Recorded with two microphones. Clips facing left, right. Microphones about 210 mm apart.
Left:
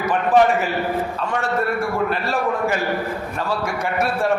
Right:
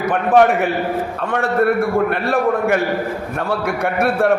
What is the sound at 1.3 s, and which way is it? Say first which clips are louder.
A man's voice: right 8 dB; 60° right (ahead or behind).